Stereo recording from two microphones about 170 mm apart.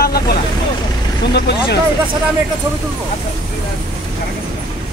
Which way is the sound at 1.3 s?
75° left (ahead or behind).